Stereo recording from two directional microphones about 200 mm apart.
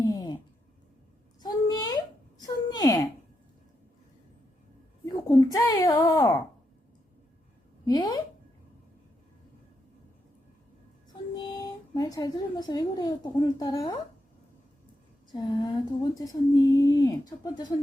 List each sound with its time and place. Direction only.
0.0 s a sound: 20° left (ahead or behind)
1.4 s a sound: 20° left (ahead or behind)
5.0 s a child's voice: 20° left (ahead or behind)
7.9 s speech: 20° left (ahead or behind)
11.9 s speech: 20° left (ahead or behind)
15.3 s speech: 20° left (ahead or behind)